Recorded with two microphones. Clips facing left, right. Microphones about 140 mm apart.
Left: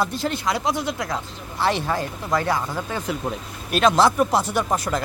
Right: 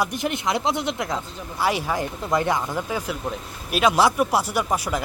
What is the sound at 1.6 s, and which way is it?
Speech, 10° right (ahead or behind).